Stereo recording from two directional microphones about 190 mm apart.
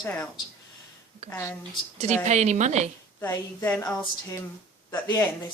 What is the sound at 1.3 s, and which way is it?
Speech, 15° left (ahead or behind).